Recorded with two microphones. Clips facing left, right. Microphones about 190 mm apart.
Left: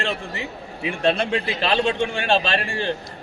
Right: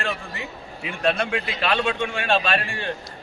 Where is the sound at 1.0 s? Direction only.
30° left (ahead or behind).